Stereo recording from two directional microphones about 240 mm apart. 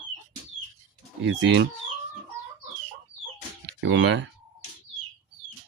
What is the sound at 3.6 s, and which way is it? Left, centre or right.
Speech, right.